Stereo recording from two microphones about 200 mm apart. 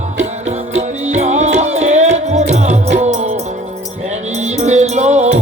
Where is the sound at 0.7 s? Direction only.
35° right (ahead or behind).